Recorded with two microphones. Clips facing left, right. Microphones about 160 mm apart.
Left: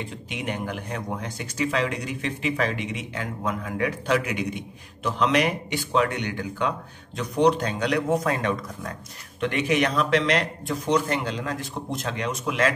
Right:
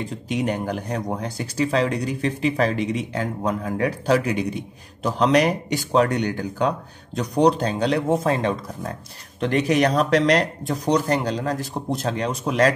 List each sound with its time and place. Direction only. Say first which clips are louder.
0.0 s speech: right 7 dB; 40° right (ahead or behind)